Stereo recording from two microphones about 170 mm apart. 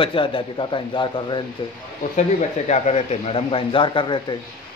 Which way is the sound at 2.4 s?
40° left (ahead or behind).